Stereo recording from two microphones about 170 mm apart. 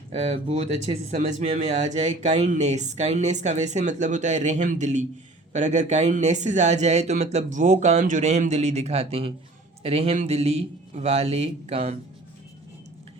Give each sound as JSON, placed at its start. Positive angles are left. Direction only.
{"t": 0.1, "sound": "a man's voice", "side_deg": -40}